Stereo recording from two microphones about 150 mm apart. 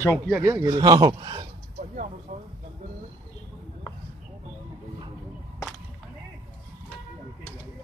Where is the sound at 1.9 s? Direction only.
55° right (ahead or behind).